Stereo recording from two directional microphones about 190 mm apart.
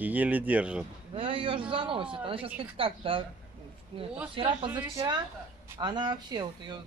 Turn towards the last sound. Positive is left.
turn(degrees=-20)  # may be behind; listen again after turning